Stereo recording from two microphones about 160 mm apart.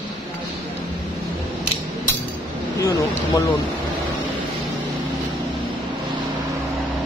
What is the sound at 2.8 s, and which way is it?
Vehicle, 30° left (ahead or behind).